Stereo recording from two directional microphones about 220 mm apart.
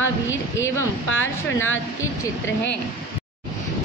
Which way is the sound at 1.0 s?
60° left (ahead or behind).